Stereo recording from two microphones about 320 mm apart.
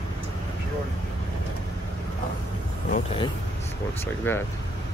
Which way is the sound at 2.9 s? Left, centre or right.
Centre.